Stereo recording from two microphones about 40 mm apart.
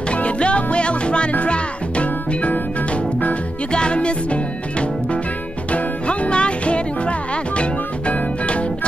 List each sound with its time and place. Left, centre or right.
0.1 s music: left
3.7 s music: left